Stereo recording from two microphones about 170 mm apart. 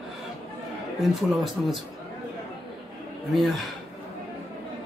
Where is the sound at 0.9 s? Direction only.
Centre (ahead or behind).